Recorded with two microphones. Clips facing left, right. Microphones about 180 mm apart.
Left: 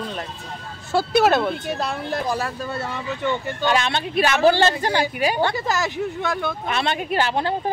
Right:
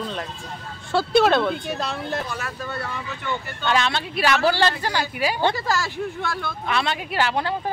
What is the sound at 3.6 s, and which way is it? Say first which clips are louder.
Speech: left 1 dB; 20° left (ahead or behind).